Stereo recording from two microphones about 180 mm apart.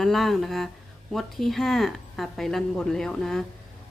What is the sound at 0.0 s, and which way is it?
Speech, centre (ahead or behind).